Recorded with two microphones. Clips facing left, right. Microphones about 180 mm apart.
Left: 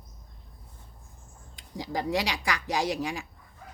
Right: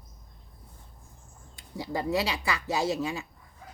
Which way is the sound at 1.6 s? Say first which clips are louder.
Even; 90° left.